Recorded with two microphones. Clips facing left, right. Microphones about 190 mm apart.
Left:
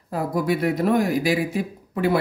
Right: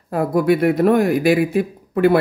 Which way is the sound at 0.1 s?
60° right (ahead or behind).